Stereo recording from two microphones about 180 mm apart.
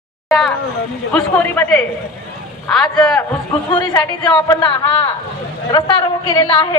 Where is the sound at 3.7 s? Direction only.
25° left (ahead or behind).